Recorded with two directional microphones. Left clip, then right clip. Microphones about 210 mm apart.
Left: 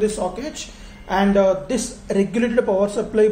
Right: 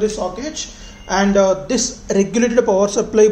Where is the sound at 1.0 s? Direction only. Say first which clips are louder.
Right 2 dB; 10° right (ahead or behind).